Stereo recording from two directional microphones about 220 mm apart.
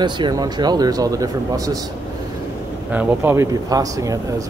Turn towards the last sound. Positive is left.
turn(degrees=-15)  # may be behind; listen again after turning